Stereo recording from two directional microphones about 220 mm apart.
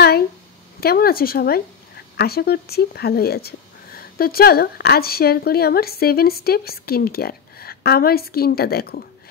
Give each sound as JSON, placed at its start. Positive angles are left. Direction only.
{"t": 0.7, "sound": "speech", "side_deg": 45}